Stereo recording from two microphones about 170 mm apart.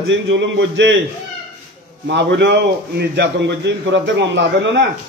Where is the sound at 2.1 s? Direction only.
90° right.